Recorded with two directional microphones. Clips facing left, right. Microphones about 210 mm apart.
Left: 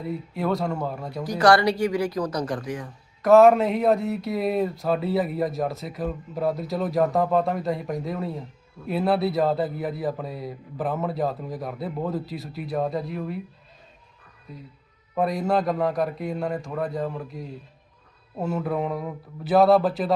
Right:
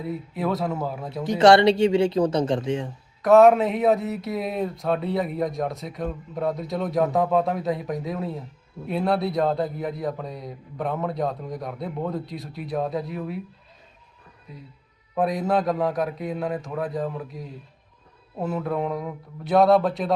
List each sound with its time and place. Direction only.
0.0 s speech: centre (ahead or behind)
1.2 s speech: 25° right (ahead or behind)
3.2 s speech: centre (ahead or behind)
14.5 s speech: centre (ahead or behind)